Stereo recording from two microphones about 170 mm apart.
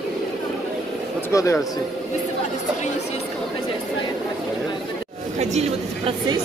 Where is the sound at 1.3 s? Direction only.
20° left (ahead or behind).